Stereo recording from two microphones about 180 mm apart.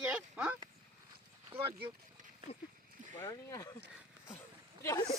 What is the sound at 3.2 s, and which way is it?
Speech, 15° left (ahead or behind).